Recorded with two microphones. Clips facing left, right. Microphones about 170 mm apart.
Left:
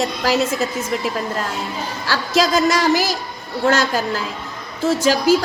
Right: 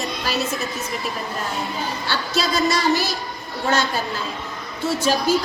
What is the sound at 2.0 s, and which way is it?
A woman's voice, 90° left.